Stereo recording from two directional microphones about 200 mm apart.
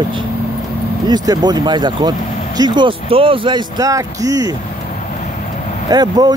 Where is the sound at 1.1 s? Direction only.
20° right (ahead or behind).